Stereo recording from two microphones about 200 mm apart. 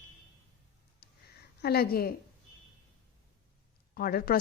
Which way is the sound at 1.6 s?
50° left (ahead or behind).